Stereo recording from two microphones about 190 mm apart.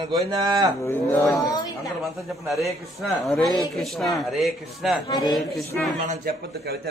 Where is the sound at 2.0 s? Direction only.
Centre (ahead or behind).